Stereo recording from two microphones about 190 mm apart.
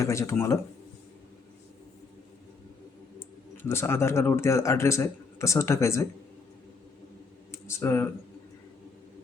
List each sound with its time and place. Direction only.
0.0 s speech: 15° left (ahead or behind)
3.2 s speech: 15° left (ahead or behind)
7.5 s speech: 15° left (ahead or behind)